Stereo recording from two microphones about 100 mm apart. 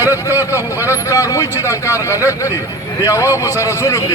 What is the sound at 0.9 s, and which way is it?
A man's voice, 35° left (ahead or behind).